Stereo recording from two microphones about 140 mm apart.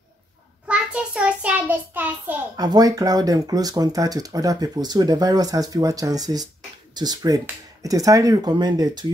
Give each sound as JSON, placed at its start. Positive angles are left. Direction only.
{"t": 0.7, "sound": "child singing", "side_deg": -10}
{"t": 2.5, "sound": "speech", "side_deg": -30}